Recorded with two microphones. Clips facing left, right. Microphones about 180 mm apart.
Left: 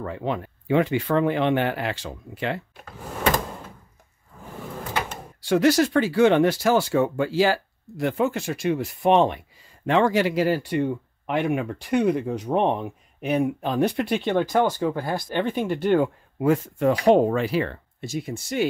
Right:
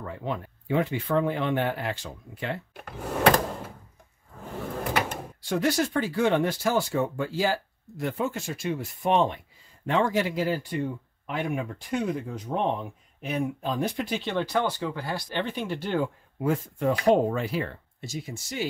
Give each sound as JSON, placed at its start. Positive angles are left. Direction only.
{"t": 0.0, "sound": "speech", "side_deg": 85}
{"t": 5.4, "sound": "speech", "side_deg": 90}